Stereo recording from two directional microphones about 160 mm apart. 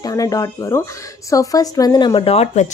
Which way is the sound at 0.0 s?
20° left (ahead or behind).